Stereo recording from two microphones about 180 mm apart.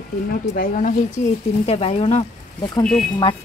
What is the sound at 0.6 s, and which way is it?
Speech, 45° left (ahead or behind).